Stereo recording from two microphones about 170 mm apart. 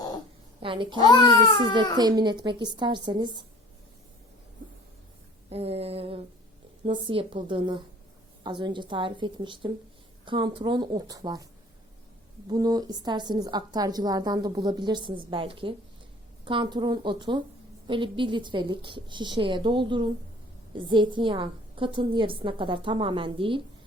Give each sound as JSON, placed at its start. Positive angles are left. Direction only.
{"t": 0.6, "sound": "a woman's voice", "side_deg": -30}
{"t": 0.9, "sound": "a child's voice", "side_deg": 25}
{"t": 2.0, "sound": "a woman's voice", "side_deg": -25}
{"t": 5.5, "sound": "a woman's voice", "side_deg": -35}
{"t": 12.5, "sound": "a woman's voice", "side_deg": -25}